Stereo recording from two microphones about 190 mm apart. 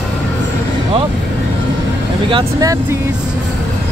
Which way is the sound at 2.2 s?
20° right (ahead or behind).